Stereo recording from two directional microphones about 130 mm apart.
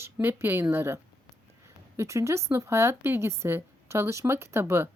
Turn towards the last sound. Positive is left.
turn(degrees=-20)  # may be behind; listen again after turning